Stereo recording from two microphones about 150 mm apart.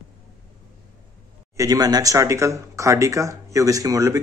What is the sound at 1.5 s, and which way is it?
Speech, 25° right (ahead or behind).